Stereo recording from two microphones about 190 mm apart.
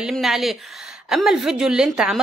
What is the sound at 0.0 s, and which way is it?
Speech, centre (ahead or behind).